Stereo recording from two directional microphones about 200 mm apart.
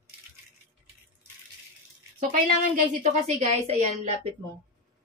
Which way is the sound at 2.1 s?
45° right (ahead or behind).